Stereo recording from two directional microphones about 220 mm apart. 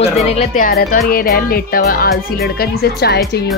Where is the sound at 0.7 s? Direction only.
45° left (ahead or behind).